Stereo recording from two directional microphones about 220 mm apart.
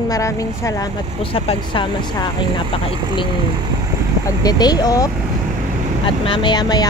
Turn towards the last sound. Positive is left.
turn(degrees=20)  # may be behind; listen again after turning